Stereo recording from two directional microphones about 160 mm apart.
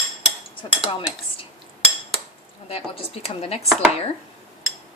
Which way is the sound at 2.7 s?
40° left (ahead or behind).